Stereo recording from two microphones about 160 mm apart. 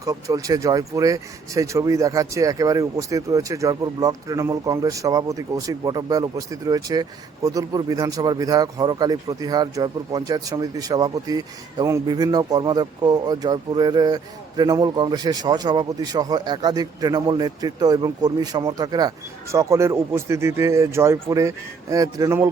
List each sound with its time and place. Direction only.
0.0 s speech: 20° right (ahead or behind)